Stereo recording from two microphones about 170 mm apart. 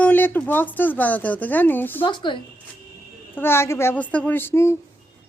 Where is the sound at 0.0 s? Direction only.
10° left (ahead or behind).